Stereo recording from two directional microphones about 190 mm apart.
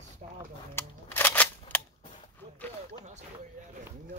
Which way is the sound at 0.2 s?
35° right (ahead or behind).